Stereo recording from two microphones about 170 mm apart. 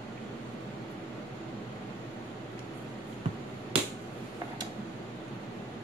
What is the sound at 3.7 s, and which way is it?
Finger snapping, 35° right (ahead or behind).